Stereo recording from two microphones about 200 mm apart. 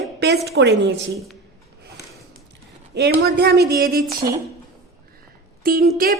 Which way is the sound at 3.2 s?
55° right (ahead or behind).